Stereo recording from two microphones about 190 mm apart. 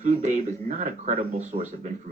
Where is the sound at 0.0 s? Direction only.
40° right (ahead or behind).